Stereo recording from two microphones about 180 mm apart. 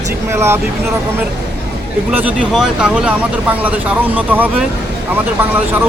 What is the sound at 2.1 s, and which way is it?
Speech, 10° right (ahead or behind).